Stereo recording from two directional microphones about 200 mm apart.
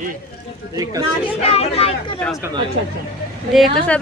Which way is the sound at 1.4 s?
30° left (ahead or behind).